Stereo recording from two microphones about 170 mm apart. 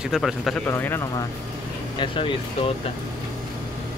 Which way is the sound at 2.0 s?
30° left (ahead or behind).